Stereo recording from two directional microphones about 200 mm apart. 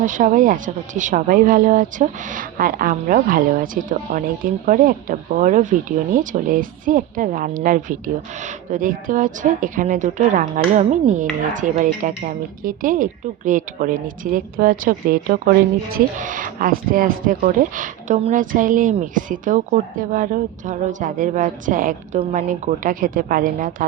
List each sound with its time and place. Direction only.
0.0 s speech: 40° right (ahead or behind)